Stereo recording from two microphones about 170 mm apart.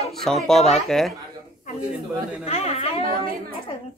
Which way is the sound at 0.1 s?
Centre (ahead or behind).